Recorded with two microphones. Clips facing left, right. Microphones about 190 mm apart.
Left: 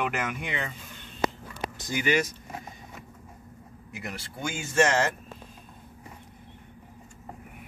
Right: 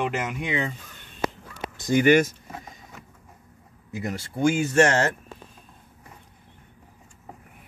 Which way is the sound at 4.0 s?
40° right (ahead or behind).